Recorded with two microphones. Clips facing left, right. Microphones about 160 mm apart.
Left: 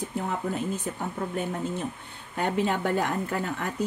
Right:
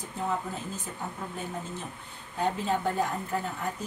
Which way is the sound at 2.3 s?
70° left (ahead or behind).